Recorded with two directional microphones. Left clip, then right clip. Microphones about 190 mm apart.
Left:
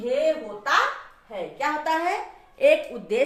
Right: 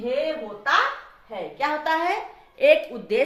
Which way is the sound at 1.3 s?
20° right (ahead or behind).